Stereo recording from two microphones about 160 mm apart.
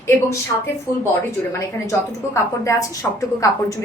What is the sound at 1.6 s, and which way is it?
A woman's voice, 20° left (ahead or behind).